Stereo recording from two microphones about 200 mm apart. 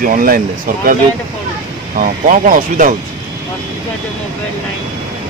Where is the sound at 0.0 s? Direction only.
45° right (ahead or behind).